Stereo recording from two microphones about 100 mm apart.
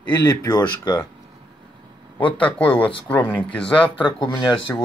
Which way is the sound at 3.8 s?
60° left (ahead or behind).